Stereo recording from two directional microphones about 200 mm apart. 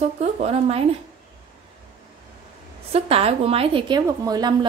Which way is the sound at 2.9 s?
30° right (ahead or behind).